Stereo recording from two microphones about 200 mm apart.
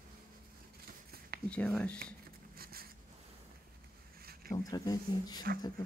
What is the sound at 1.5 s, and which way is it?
Speech, 5° left (ahead or behind).